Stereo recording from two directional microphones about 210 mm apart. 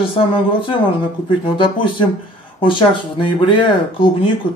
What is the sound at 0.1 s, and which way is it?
Speech, 25° left (ahead or behind).